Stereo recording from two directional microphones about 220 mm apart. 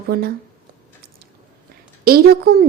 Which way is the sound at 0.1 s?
45° right (ahead or behind).